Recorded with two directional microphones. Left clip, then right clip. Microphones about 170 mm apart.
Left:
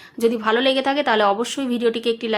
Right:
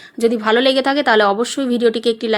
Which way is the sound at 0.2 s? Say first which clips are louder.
Right 4 dB; 30° right (ahead or behind).